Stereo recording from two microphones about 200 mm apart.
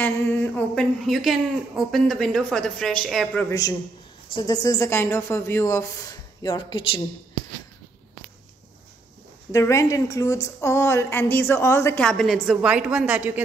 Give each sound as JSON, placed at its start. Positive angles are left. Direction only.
{"t": 0.0, "sound": "speech", "side_deg": 10}
{"t": 3.4, "sound": "a woman's voice", "side_deg": 15}
{"t": 9.5, "sound": "a woman's voice", "side_deg": 15}